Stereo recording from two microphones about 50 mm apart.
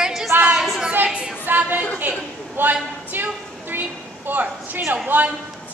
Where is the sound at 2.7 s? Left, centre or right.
Right.